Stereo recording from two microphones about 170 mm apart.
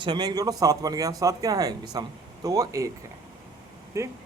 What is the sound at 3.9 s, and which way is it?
Speech, 15° right (ahead or behind).